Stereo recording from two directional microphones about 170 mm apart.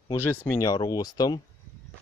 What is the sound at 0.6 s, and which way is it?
Speech, 20° left (ahead or behind).